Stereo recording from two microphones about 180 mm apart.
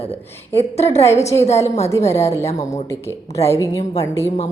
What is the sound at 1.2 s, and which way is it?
Speech, 35° left (ahead or behind).